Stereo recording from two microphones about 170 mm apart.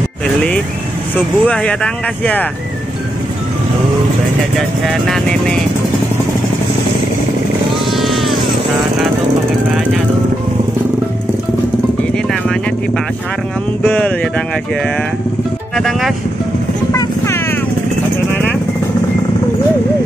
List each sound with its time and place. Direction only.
1.1 s speech: 10° left (ahead or behind)
4.6 s speech: centre (ahead or behind)
7.9 s a sound: centre (ahead or behind)
13.8 s speech: 10° left (ahead or behind)
15.7 s speech: centre (ahead or behind)
16.9 s vehicle: 15° left (ahead or behind)